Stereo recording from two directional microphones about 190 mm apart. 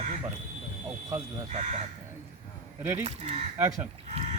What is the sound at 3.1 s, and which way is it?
Speech, 35° right (ahead or behind).